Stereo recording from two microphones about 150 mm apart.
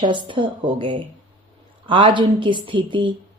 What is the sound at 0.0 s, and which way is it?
A woman's voice, 30° right (ahead or behind).